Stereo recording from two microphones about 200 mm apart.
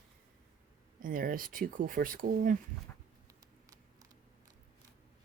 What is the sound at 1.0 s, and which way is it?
Speech, 45° right (ahead or behind).